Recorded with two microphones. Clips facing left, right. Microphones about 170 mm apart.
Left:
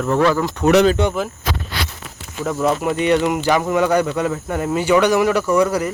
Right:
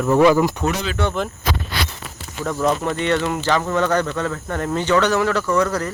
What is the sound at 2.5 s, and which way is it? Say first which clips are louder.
Speech: left 2 dB; 5° left (ahead or behind).